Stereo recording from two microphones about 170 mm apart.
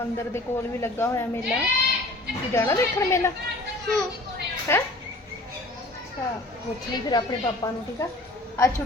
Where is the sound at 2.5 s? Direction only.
15° left (ahead or behind).